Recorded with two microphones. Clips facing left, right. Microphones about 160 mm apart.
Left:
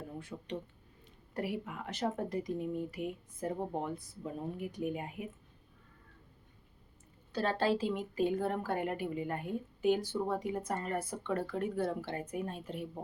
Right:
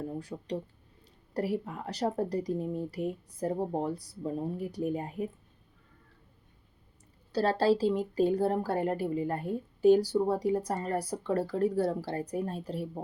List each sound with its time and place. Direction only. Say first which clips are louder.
0.2 s a woman's voice: right 5 dB; 35° right (ahead or behind)
7.3 s a woman's voice: right 6 dB; 35° right (ahead or behind)